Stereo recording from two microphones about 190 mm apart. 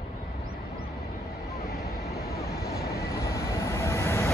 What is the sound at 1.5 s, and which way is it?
Vehicle, 55° left (ahead or behind).